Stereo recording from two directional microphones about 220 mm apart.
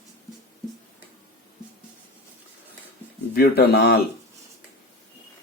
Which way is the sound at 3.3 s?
45° left (ahead or behind).